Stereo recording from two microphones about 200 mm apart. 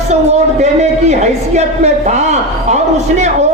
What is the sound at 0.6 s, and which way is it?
A man's voice, 35° right (ahead or behind).